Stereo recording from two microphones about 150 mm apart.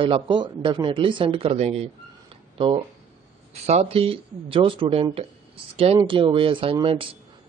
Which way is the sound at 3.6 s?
45° right (ahead or behind).